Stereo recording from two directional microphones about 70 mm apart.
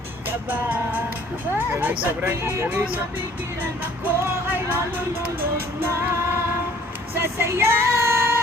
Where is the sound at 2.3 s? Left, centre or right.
Right.